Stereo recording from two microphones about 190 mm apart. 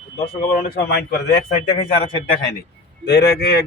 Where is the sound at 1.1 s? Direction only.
60° left (ahead or behind).